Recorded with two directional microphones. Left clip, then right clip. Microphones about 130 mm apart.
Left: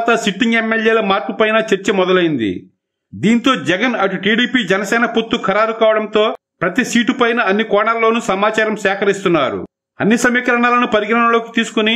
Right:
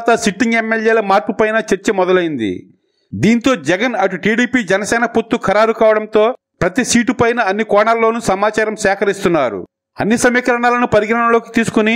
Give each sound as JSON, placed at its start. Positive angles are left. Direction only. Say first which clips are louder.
{"t": 0.0, "sound": "a man's voice", "louder": "right 1 dB", "side_deg": -35}